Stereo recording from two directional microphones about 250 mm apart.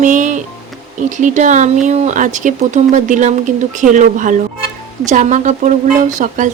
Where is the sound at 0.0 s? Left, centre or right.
Right.